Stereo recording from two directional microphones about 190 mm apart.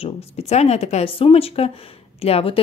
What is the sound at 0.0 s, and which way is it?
Speech, 35° left (ahead or behind).